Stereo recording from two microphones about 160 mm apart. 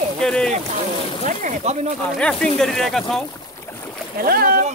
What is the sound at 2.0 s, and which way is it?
Speech, 5° left (ahead or behind).